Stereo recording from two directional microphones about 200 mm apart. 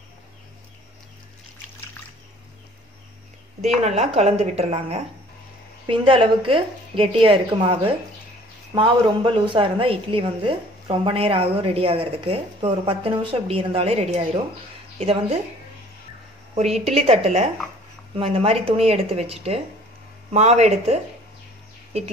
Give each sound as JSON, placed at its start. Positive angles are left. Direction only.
{"t": 3.6, "sound": "a woman's voice", "side_deg": -30}
{"t": 16.5, "sound": "a woman's voice", "side_deg": -30}